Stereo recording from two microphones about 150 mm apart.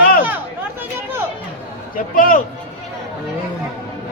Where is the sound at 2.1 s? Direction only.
65° left (ahead or behind).